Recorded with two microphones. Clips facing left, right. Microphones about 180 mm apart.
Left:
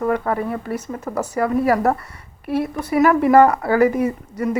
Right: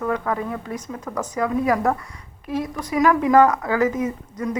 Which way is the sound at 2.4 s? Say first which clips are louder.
Left 4 dB; 60° left (ahead or behind).